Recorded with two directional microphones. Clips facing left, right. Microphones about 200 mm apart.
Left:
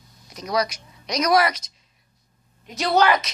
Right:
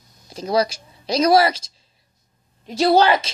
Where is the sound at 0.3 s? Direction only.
30° right (ahead or behind).